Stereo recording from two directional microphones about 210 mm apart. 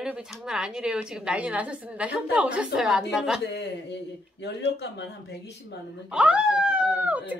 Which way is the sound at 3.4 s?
55° left (ahead or behind).